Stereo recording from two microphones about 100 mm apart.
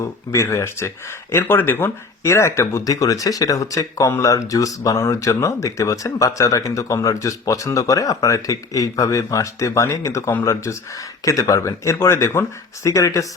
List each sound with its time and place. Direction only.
0.0 s speech: 30° left (ahead or behind)